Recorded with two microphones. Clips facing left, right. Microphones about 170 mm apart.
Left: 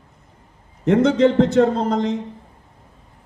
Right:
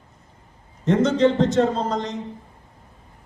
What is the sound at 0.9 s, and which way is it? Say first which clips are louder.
A man's voice: left 3 dB; 65° left (ahead or behind).